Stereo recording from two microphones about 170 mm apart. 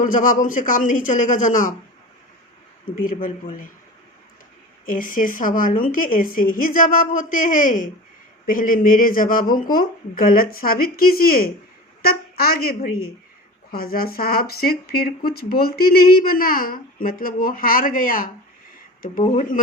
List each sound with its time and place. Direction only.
0.0 s a woman's voice: 50° left (ahead or behind)
2.9 s a woman's voice: 55° left (ahead or behind)
4.9 s a woman's voice: 50° left (ahead or behind)
19.2 s speech: 40° left (ahead or behind)